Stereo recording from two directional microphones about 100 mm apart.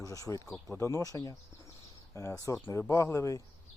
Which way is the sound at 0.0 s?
35° left (ahead or behind).